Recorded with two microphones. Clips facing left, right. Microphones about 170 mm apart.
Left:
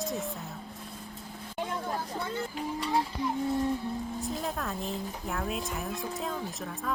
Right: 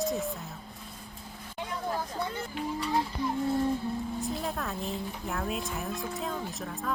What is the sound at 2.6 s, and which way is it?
Speech, 40° left (ahead or behind).